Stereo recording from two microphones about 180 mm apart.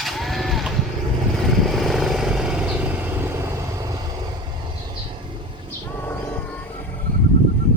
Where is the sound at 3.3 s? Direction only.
15° right (ahead or behind).